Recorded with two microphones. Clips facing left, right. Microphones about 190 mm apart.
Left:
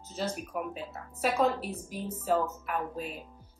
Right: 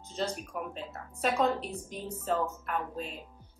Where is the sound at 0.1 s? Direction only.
5° left (ahead or behind).